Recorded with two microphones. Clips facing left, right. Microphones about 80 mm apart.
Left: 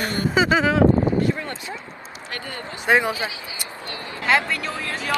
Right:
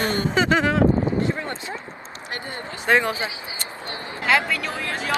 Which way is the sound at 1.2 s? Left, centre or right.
Right.